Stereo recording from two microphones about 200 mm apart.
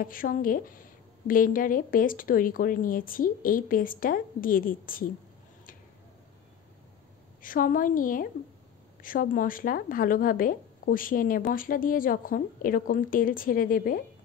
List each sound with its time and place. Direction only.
0.0 s speech: 45° left (ahead or behind)
7.4 s speech: 45° left (ahead or behind)